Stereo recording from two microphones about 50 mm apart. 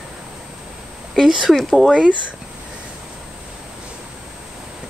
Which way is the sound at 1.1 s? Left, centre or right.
Centre.